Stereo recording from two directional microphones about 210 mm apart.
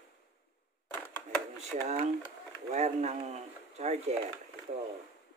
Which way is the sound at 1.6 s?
30° right (ahead or behind).